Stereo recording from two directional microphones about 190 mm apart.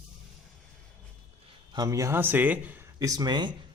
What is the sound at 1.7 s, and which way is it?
A man's voice, 20° right (ahead or behind).